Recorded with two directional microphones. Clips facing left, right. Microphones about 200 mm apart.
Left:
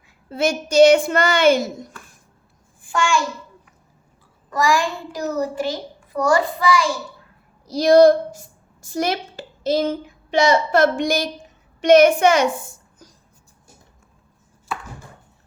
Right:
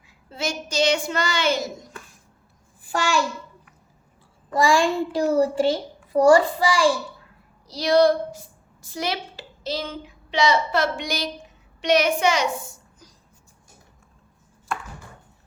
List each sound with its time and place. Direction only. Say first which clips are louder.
0.3 s a woman's voice: left 8 dB; 55° left (ahead or behind)
2.8 s a child's voice: left 3 dB; 40° right (ahead or behind)
4.4 s a child's voice: right 1 dB; 30° right (ahead or behind)
7.7 s a woman's voice: left 6 dB; 45° left (ahead or behind)
14.7 s chopping: even; 5° left (ahead or behind)